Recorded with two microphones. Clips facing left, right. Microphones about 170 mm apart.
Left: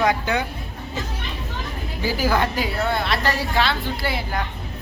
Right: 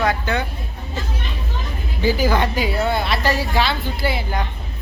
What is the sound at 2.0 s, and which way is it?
A woman's voice, 5° left (ahead or behind).